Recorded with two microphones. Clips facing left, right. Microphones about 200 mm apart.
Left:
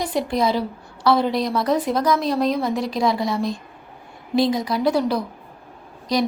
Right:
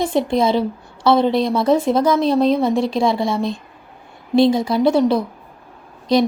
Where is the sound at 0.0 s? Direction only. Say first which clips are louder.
Right 4 dB; 25° right (ahead or behind).